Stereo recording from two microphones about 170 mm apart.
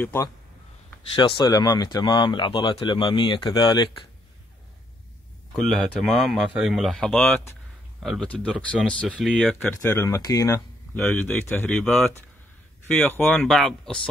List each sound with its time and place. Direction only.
0.0 s speech: 15° left (ahead or behind)
1.1 s speech: 30° left (ahead or behind)
5.6 s speech: 5° left (ahead or behind)
7.2 s speech: 10° left (ahead or behind)
9.6 s speech: 10° left (ahead or behind)
11.0 s speech: 10° left (ahead or behind)